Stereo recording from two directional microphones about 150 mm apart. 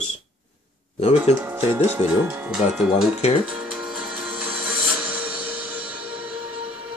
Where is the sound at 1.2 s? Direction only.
15° right (ahead or behind).